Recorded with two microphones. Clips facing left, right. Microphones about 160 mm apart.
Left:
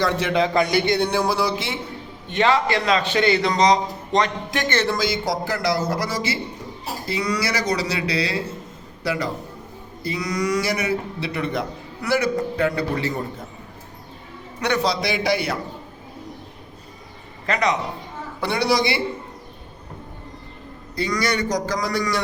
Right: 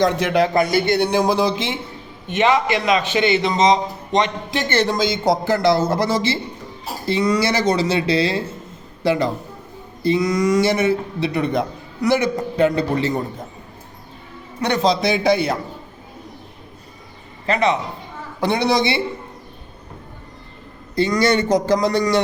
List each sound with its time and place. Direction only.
0.0 s a man's voice: 15° right (ahead or behind)
0.7 s a man's voice: 20° left (ahead or behind)
1.1 s a man's voice: 20° right (ahead or behind)
14.8 s a man's voice: 20° right (ahead or behind)
17.4 s a man's voice: 30° right (ahead or behind)
20.9 s a man's voice: 25° right (ahead or behind)